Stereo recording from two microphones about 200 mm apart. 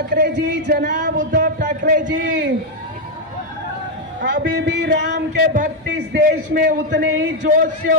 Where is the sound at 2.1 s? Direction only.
65° right (ahead or behind).